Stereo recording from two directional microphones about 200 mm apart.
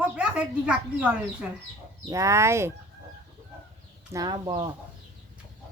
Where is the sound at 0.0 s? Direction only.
5° right (ahead or behind).